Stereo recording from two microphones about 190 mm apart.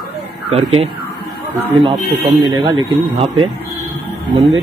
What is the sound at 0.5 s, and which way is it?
Speech, 30° right (ahead or behind).